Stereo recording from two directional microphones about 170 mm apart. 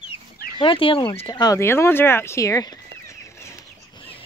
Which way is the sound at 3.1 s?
15° left (ahead or behind).